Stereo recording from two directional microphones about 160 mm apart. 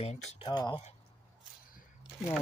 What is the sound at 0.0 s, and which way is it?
Speech, 45° left (ahead or behind).